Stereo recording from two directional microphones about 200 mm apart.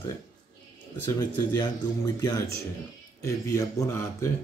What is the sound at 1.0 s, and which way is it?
Speech, 20° left (ahead or behind).